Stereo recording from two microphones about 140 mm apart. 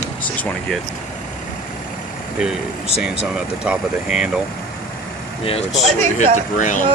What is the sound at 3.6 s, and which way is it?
Speech, 10° right (ahead or behind).